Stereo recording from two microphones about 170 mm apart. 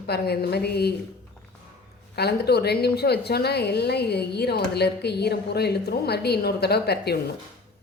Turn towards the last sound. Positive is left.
turn(degrees=70)  # may be behind; listen again after turning